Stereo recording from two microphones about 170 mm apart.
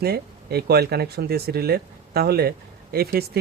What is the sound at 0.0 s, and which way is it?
A man's voice, 65° right (ahead or behind).